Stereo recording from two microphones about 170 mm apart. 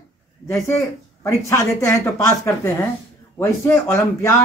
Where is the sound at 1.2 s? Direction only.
15° left (ahead or behind).